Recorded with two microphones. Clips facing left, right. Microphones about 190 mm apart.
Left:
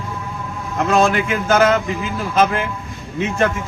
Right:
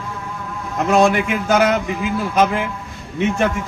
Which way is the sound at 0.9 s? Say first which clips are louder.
Right 1 dB; 15° right (ahead or behind).